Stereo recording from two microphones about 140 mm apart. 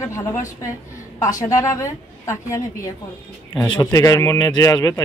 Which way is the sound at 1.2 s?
25° left (ahead or behind).